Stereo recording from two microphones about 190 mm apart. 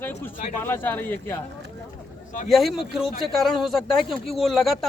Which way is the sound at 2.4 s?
Centre (ahead or behind).